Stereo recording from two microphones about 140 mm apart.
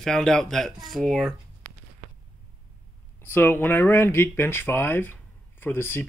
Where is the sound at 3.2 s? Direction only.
15° left (ahead or behind).